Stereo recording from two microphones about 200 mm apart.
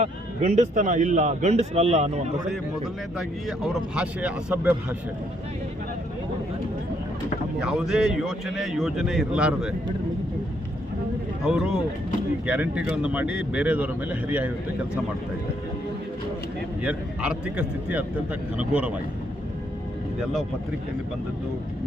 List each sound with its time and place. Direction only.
0.0 s speech: 35° right (ahead or behind)
3.2 s speech: centre (ahead or behind)
7.6 s speech: centre (ahead or behind)
11.4 s speech: 5° right (ahead or behind)
16.8 s speech: 5° right (ahead or behind)